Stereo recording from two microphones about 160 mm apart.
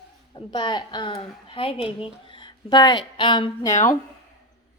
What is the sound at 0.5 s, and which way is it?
Speech, 30° left (ahead or behind).